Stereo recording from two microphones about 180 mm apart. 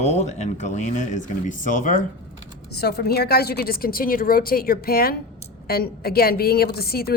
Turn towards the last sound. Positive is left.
turn(degrees=60)  # may be behind; listen again after turning